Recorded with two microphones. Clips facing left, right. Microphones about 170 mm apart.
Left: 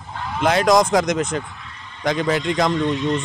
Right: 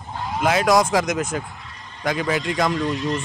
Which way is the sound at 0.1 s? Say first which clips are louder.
Right 1 dB; 15° right (ahead or behind).